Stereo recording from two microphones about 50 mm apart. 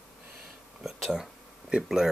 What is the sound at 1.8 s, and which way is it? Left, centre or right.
Speech, centre.